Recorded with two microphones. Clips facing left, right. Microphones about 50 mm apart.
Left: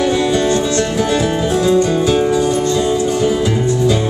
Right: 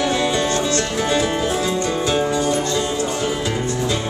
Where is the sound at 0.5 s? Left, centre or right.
Centre.